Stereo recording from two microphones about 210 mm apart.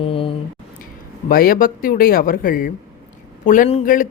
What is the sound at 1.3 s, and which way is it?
Speech, 45° left (ahead or behind).